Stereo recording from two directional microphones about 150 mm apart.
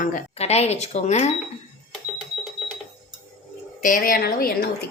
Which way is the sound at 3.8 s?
70° left (ahead or behind).